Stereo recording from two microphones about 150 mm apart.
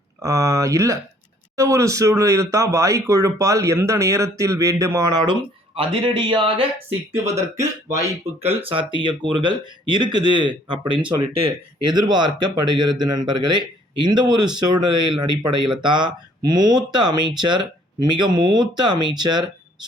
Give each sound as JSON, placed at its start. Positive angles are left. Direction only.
{"t": 0.2, "sound": "speech", "side_deg": -20}
{"t": 5.7, "sound": "speech", "side_deg": -35}
{"t": 8.3, "sound": "speech", "side_deg": -45}
{"t": 8.6, "sound": "speech", "side_deg": -35}